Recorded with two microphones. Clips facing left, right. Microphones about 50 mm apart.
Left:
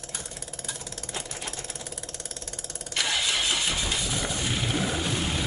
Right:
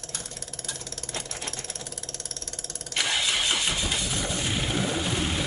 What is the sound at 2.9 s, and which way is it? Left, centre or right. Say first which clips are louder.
Engine starting: right 1 dB; centre.